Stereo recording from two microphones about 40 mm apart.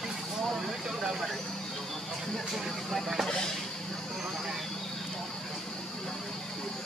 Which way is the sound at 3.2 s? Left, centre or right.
Centre.